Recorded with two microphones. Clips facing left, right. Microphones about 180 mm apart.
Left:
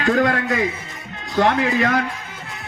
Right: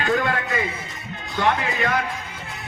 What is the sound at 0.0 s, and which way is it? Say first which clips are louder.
Speech: left 4 dB; 45° left (ahead or behind).